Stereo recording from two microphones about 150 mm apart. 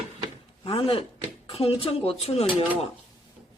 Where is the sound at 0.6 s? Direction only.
40° left (ahead or behind).